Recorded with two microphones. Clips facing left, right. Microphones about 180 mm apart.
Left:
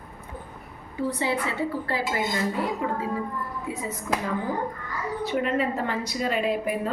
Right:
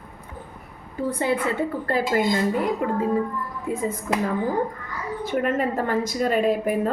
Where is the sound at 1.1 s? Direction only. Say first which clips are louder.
Right 7 dB; 50° right (ahead or behind).